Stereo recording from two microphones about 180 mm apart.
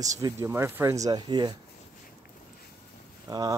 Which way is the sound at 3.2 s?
20° right (ahead or behind).